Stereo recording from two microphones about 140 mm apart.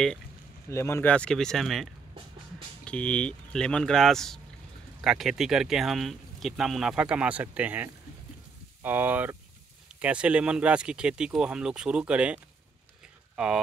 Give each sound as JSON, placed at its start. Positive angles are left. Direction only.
{"t": 0.7, "sound": "speech", "side_deg": 20}
{"t": 1.1, "sound": "speech", "side_deg": 5}